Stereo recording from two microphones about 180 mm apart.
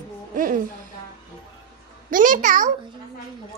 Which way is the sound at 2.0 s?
50° right (ahead or behind).